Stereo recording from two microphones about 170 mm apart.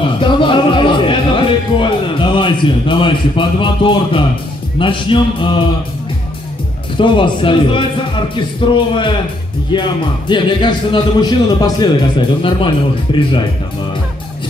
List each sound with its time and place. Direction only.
0.2 s music: 30° left (ahead or behind)
4.7 s speech: 30° left (ahead or behind)
7.0 s speech: 30° left (ahead or behind)